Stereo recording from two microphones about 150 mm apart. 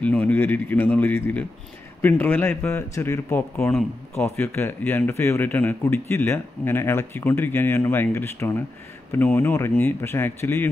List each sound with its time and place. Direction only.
0.0 s a man's voice: 10° left (ahead or behind)